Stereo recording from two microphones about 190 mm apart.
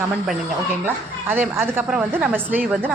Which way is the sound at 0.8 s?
10° right (ahead or behind).